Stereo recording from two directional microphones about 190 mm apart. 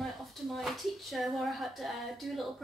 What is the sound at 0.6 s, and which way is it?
Speech, centre (ahead or behind).